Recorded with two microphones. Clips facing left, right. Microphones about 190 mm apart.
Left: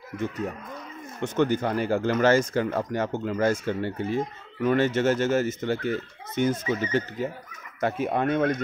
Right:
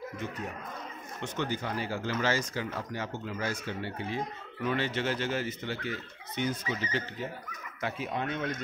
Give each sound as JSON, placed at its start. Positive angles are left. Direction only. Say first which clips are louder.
{"t": 1.2, "sound": "speech", "louder": "left 10 dB", "side_deg": 50}